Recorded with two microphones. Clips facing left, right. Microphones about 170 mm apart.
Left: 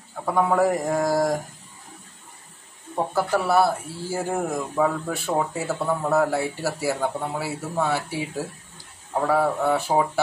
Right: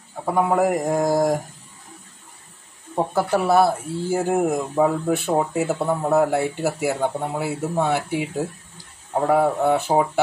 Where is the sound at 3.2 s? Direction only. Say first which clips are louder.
Right 3 dB; 20° right (ahead or behind).